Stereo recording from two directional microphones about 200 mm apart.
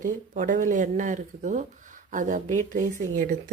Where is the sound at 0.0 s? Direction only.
40° right (ahead or behind).